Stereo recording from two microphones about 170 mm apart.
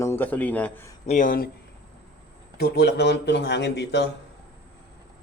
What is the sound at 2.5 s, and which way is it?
Speech, 70° left (ahead or behind).